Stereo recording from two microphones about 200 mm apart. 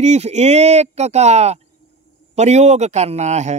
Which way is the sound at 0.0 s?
35° right (ahead or behind).